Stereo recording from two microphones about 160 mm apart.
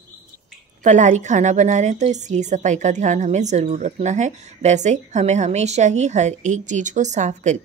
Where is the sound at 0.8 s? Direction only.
50° right (ahead or behind).